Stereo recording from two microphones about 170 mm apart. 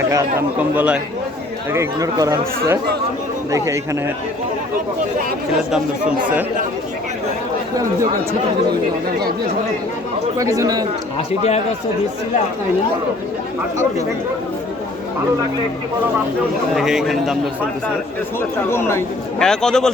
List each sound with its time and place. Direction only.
0.1 s speech: 15° right (ahead or behind)
10.3 s speech: 20° right (ahead or behind)
11.3 s a man's voice: 40° left (ahead or behind)
16.7 s a man's voice: centre (ahead or behind)
18.7 s speech: 15° left (ahead or behind)
19.4 s a man's voice: 5° left (ahead or behind)